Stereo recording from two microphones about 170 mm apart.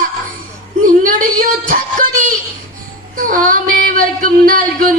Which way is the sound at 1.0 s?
55° right (ahead or behind).